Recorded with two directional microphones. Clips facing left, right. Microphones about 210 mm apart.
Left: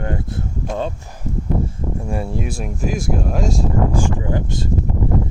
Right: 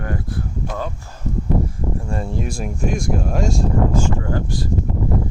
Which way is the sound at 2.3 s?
Centre (ahead or behind).